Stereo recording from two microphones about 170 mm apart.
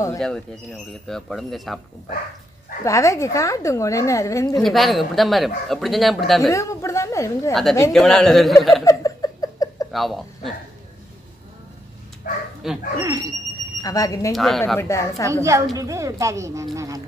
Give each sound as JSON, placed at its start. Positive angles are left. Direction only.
{"t": 1.0, "sound": "speech", "side_deg": 0}
{"t": 2.8, "sound": "a woman's voice", "side_deg": 20}
{"t": 4.6, "sound": "speech", "side_deg": 0}
{"t": 6.5, "sound": "speech", "side_deg": 20}
{"t": 7.9, "sound": "speech", "side_deg": 0}
{"t": 8.8, "sound": "a sound", "side_deg": 20}
{"t": 9.9, "sound": "speech", "side_deg": 0}
{"t": 12.2, "sound": "speech", "side_deg": 55}
{"t": 12.6, "sound": "speech", "side_deg": 0}
{"t": 13.0, "sound": "a woman's voice", "side_deg": -25}
{"t": 13.8, "sound": "a woman's voice", "side_deg": 20}
{"t": 14.3, "sound": "speech", "side_deg": 0}
{"t": 14.8, "sound": "speech", "side_deg": 15}
{"t": 15.4, "sound": "a woman's voice", "side_deg": -20}